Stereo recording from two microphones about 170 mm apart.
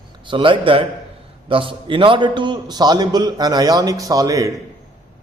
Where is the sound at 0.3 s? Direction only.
30° right (ahead or behind).